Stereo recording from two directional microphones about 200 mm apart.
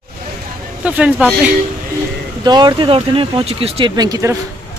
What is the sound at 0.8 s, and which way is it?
Speech, 5° right (ahead or behind).